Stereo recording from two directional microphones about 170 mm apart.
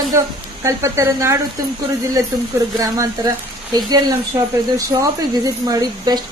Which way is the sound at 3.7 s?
25° right (ahead or behind).